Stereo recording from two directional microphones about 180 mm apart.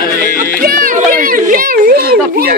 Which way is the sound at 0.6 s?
50° right (ahead or behind).